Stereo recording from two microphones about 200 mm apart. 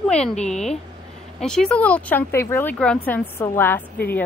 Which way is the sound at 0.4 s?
35° left (ahead or behind).